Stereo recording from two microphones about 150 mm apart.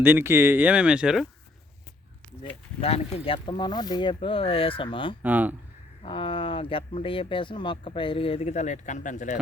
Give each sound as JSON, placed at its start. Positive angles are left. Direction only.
{"t": 0.0, "sound": "speech", "side_deg": -15}
{"t": 2.8, "sound": "speech", "side_deg": 40}
{"t": 5.2, "sound": "speech", "side_deg": -10}
{"t": 6.0, "sound": "speech", "side_deg": 35}